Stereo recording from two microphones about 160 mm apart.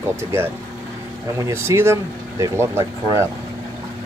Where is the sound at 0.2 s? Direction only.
15° right (ahead or behind).